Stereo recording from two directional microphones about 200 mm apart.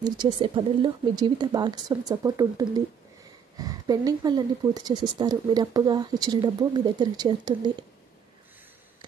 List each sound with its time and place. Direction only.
0.0 s speech: 25° right (ahead or behind)